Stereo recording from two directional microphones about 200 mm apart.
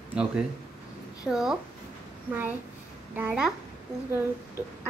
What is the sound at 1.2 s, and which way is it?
Speech, centre (ahead or behind).